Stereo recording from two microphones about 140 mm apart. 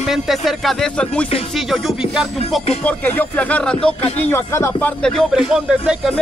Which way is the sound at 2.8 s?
15° left (ahead or behind).